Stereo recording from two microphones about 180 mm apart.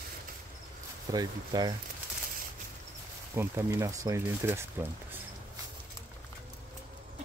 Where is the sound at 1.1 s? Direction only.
20° right (ahead or behind).